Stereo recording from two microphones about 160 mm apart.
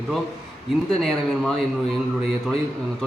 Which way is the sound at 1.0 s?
5° left (ahead or behind).